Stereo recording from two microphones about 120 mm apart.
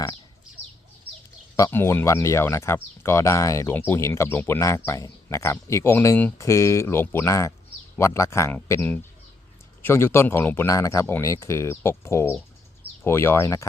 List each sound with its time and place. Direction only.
1.7 s speech: 20° left (ahead or behind)